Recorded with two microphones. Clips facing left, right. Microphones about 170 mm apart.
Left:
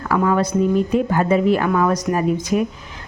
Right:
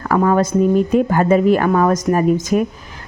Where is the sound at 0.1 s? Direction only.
45° right (ahead or behind).